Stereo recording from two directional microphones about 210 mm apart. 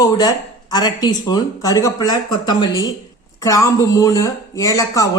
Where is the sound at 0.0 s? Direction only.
20° left (ahead or behind).